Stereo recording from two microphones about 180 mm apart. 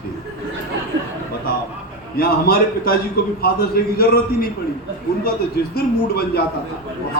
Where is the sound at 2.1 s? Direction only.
55° left (ahead or behind).